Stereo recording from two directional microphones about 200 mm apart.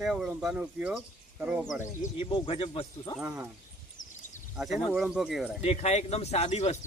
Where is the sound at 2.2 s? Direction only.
25° left (ahead or behind).